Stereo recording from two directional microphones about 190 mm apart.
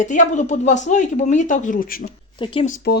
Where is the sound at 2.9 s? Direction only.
55° left (ahead or behind).